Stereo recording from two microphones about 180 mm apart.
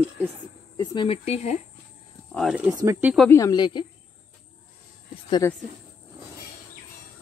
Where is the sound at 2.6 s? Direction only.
15° right (ahead or behind).